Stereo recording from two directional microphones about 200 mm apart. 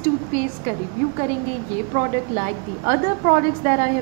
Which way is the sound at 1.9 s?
40° right (ahead or behind).